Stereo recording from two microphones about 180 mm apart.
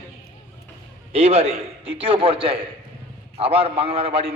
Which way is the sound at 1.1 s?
35° right (ahead or behind).